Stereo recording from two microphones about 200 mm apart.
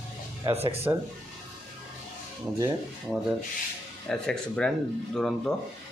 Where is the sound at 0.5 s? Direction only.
30° right (ahead or behind).